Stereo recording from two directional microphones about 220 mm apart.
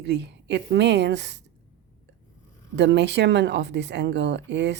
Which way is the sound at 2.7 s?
50° right (ahead or behind).